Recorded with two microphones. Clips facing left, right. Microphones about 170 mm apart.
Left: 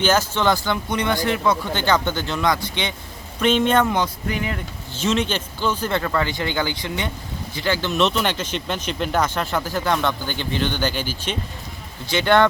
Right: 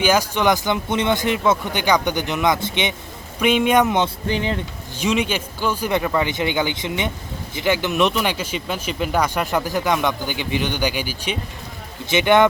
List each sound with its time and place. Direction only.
0.0 s speech: 10° right (ahead or behind)
3.4 s speech: 10° right (ahead or behind); by 4.6 s 30° right (ahead or behind)
4.9 s speech: 10° right (ahead or behind)